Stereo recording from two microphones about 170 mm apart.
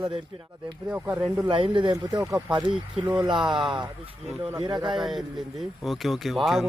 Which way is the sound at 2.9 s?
10° right (ahead or behind).